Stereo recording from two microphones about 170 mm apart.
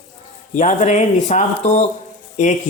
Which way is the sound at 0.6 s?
45° left (ahead or behind).